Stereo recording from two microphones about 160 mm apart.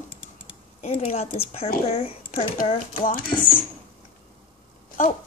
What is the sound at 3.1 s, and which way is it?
Speech, 65° left (ahead or behind).